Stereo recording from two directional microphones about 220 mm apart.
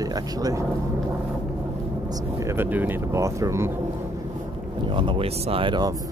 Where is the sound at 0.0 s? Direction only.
15° right (ahead or behind).